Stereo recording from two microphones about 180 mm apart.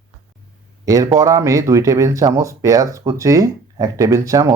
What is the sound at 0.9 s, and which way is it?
Speech, 20° right (ahead or behind).